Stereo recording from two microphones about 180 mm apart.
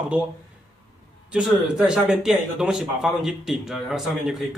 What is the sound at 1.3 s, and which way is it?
Speech, 5° right (ahead or behind).